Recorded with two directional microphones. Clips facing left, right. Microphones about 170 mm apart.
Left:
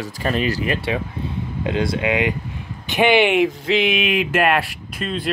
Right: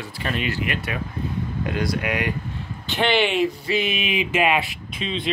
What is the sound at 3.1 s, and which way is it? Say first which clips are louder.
Speech: left 5 dB; 55° left (ahead or behind).